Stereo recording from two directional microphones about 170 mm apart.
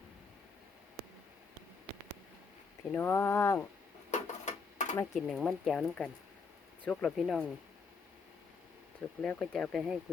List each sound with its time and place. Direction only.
2.9 s speech: 15° left (ahead or behind)
4.1 s a sound: 45° left (ahead or behind)
5.1 s speech: centre (ahead or behind)
9.2 s speech: 5° left (ahead or behind)